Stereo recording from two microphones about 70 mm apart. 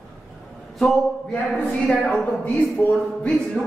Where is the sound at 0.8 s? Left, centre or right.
Centre.